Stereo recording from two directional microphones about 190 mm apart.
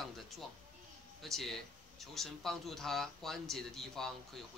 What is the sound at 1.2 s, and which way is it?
Speech, centre (ahead or behind).